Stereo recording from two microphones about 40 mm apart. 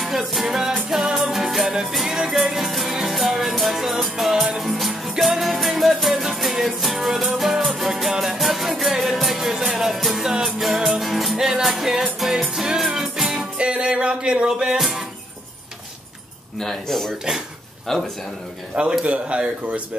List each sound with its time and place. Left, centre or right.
0.0 s music: centre
11.3 s music: centre
13.3 s music: right
14.8 s music: centre
16.5 s speech: centre
18.8 s speech: right